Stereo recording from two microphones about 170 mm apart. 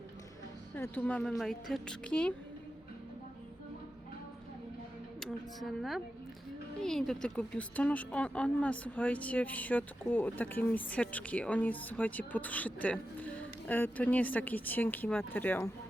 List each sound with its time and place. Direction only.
0.8 s speech: 10° left (ahead or behind)
5.2 s speech: centre (ahead or behind)